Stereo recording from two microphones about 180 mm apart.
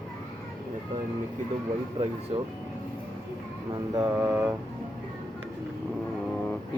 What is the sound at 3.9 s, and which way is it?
Mantra, 10° right (ahead or behind).